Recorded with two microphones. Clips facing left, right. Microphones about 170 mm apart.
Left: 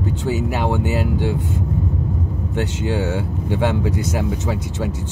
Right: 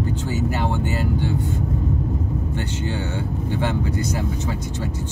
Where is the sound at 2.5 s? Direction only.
90° left.